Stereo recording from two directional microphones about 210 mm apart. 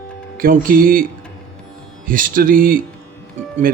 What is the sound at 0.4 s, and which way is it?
Speech, 45° right (ahead or behind).